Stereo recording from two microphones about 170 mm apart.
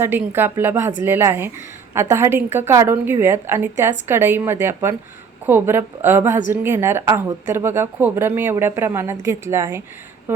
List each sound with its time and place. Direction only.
0.0 s a woman's voice: 15° right (ahead or behind)